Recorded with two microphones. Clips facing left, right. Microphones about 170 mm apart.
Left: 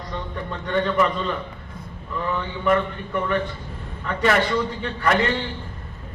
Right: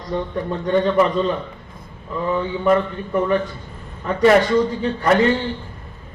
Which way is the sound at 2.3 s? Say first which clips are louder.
Right 4 dB; 35° right (ahead or behind).